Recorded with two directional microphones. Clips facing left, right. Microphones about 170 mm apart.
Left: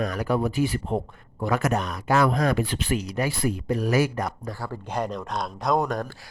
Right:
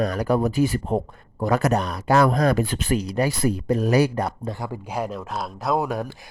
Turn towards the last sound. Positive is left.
turn(degrees=-5)  # may be behind; listen again after turning